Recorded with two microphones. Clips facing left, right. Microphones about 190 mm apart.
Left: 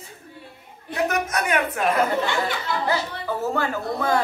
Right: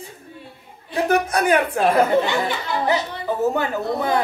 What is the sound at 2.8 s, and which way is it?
Speech, 20° right (ahead or behind).